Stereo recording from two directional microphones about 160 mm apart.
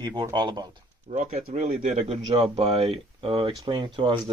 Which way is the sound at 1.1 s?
45° right (ahead or behind).